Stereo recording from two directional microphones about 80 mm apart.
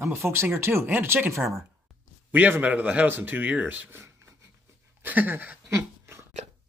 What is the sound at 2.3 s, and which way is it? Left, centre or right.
Speech, centre.